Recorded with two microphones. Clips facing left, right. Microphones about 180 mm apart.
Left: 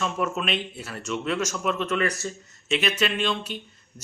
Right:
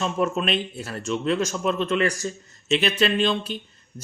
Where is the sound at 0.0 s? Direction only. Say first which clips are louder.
Right 3 dB; 35° right (ahead or behind).